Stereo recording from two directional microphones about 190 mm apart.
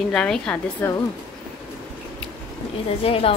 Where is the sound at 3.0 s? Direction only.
30° left (ahead or behind).